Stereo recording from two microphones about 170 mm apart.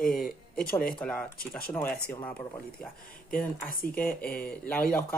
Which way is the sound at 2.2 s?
10° left (ahead or behind).